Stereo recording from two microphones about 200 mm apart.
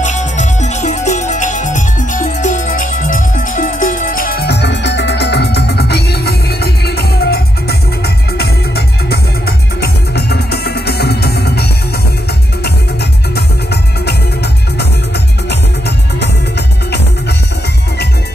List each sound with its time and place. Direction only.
0.0 s music: 35° left (ahead or behind); by 11.6 s 55° left (ahead or behind)